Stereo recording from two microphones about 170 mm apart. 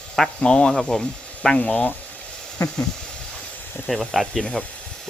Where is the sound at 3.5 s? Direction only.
10° left (ahead or behind).